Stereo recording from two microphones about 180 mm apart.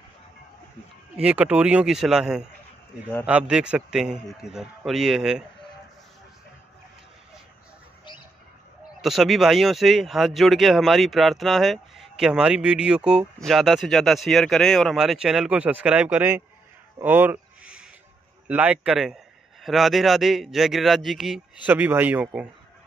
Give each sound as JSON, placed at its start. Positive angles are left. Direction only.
{"t": 1.1, "sound": "speech", "side_deg": -5}
{"t": 9.0, "sound": "speech", "side_deg": 0}
{"t": 17.0, "sound": "a sound", "side_deg": -10}
{"t": 18.5, "sound": "a man's voice", "side_deg": -10}